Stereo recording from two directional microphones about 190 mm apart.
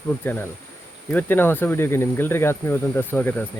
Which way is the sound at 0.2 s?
10° left (ahead or behind).